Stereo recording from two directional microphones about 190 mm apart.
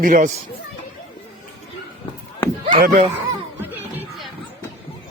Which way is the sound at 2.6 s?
45° right (ahead or behind).